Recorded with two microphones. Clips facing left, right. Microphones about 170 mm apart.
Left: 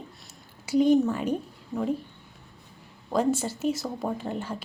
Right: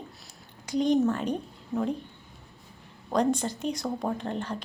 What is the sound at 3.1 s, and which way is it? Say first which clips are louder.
Speech: even; 5° left (ahead or behind).